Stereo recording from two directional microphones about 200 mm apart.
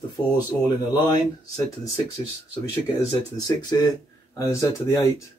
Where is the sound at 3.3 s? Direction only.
20° left (ahead or behind).